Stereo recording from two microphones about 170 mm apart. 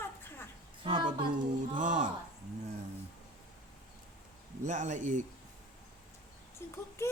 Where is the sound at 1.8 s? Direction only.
45° right (ahead or behind).